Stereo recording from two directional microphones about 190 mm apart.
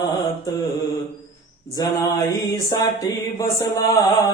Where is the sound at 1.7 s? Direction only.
20° left (ahead or behind).